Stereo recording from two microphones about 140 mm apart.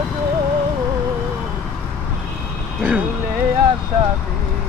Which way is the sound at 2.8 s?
10° right (ahead or behind).